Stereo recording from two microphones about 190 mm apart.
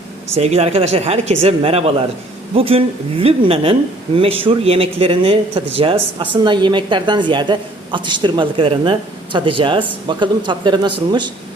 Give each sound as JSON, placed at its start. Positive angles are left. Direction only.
{"t": 0.3, "sound": "speech", "side_deg": -35}